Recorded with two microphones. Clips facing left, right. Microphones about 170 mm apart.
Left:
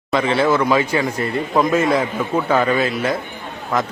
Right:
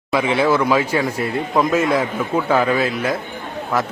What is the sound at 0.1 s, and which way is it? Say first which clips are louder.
A man's voice: even; 5° right (ahead or behind).